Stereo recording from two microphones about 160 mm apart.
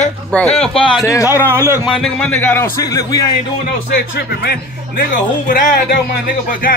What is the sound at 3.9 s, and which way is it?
A man's voice, 75° left (ahead or behind).